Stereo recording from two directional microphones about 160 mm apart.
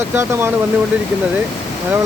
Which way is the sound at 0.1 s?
15° right (ahead or behind).